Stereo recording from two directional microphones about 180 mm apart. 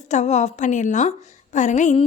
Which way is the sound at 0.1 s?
40° left (ahead or behind).